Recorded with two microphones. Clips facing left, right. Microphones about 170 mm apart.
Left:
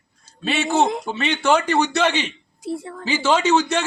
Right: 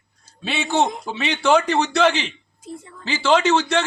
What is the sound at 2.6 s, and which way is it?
Speech, 80° left.